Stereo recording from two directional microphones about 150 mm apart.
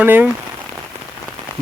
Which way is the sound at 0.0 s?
15° right (ahead or behind).